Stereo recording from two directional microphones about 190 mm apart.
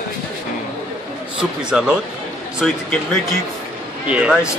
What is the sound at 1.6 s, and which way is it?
Speech, 5° right (ahead or behind).